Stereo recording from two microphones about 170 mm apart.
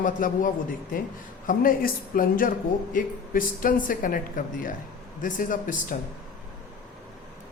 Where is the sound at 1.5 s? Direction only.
55° left (ahead or behind).